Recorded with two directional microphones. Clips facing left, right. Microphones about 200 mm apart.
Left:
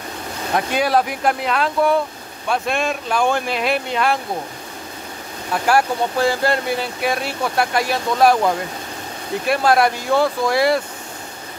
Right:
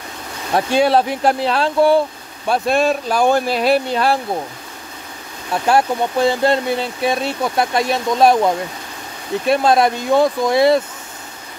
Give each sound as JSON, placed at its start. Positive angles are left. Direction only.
{"t": 0.7, "sound": "speech", "side_deg": -30}
{"t": 5.7, "sound": "speech", "side_deg": -20}